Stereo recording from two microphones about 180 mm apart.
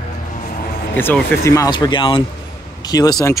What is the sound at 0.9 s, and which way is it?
Speech, 10° left (ahead or behind).